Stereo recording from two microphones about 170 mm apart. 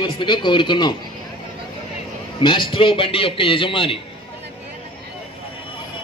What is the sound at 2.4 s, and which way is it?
A man's voice, 30° left (ahead or behind).